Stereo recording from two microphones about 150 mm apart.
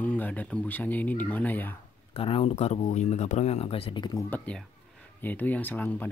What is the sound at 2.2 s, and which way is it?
Speech, 40° left (ahead or behind).